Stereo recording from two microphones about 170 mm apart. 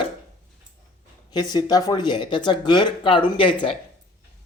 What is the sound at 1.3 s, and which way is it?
Speech, 25° left (ahead or behind).